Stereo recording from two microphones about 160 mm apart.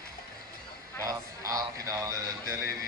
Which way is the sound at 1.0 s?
20° right (ahead or behind).